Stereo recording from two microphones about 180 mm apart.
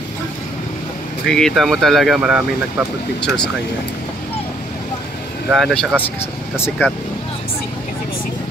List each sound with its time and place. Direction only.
1.3 s speech: centre (ahead or behind)
5.5 s speech: centre (ahead or behind)
6.0 s speech: 10° left (ahead or behind)